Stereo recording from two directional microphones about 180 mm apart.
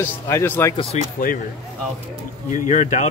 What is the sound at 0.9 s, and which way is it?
Speech, 40° left (ahead or behind).